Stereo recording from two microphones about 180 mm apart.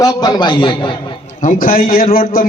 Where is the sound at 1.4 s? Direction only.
50° left (ahead or behind).